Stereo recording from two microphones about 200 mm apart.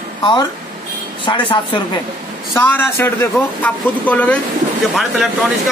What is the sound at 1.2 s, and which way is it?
Speech, 25° left (ahead or behind).